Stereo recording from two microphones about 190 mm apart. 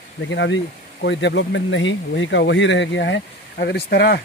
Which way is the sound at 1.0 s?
65° left (ahead or behind).